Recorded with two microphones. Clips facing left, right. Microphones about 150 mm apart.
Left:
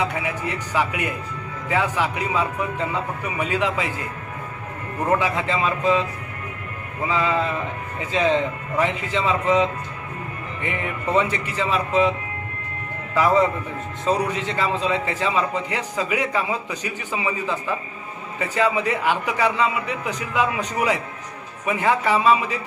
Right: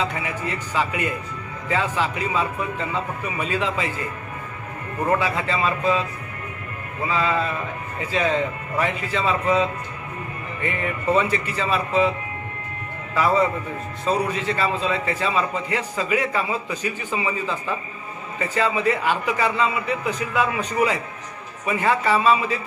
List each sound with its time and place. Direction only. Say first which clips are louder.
0.0 s a man's voice: left 1 dB; 15° left (ahead or behind)
5.2 s a man's voice: left 1 dB; 15° left (ahead or behind)
7.1 s a man's voice: left 1 dB; 15° left (ahead or behind)
13.1 s a man's voice: left 1 dB; 15° left (ahead or behind)